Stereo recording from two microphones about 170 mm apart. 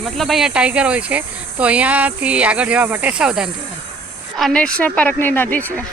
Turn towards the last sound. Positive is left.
turn(degrees=10)  # may be behind; listen again after turning